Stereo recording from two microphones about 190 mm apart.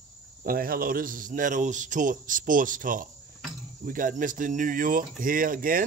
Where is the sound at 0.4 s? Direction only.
50° right (ahead or behind).